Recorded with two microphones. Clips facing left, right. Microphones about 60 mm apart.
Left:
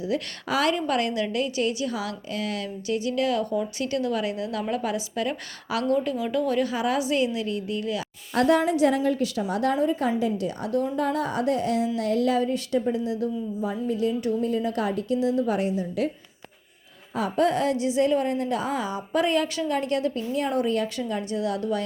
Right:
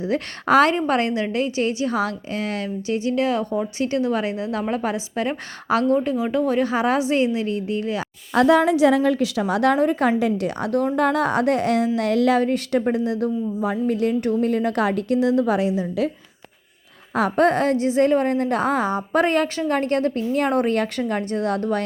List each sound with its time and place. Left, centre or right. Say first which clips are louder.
0.0 s a woman's voice: right 4 dB; right
0.7 s a woman's voice: right 4 dB; right
9.2 s a woman's voice: right 5 dB; right
11.9 s a woman's voice: right 4 dB; right
17.2 s a woman's voice: right 5 dB; right
21.0 s a woman's voice: right 4 dB; right